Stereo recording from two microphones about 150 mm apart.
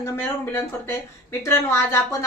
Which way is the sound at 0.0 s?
15° left (ahead or behind).